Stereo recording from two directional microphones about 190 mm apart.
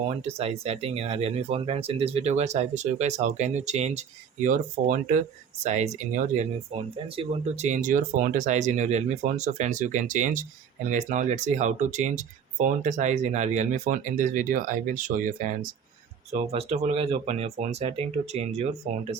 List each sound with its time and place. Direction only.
0.3 s speech: 30° right (ahead or behind)
16.3 s speech: 35° right (ahead or behind)